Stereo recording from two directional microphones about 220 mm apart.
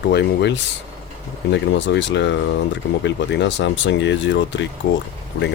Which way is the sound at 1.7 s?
55° left (ahead or behind).